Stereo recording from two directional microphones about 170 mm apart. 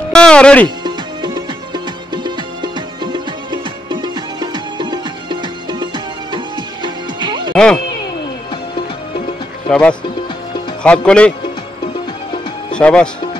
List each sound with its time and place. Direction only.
0.1 s music: 5° left (ahead or behind)
0.8 s music: 25° right (ahead or behind)
7.5 s speech: 5° left (ahead or behind)
9.7 s speech: 5° left (ahead or behind)
12.7 s speech: 5° left (ahead or behind)